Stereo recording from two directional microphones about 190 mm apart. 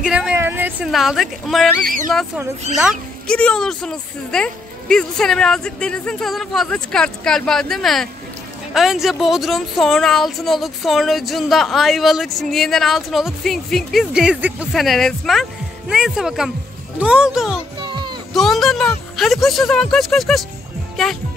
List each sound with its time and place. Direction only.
0.0 s a woman's voice: 5° right (ahead or behind)
17.8 s music: 20° right (ahead or behind)
18.3 s a woman's voice: centre (ahead or behind)